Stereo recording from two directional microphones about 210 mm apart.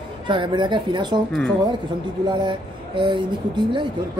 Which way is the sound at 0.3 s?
20° right (ahead or behind).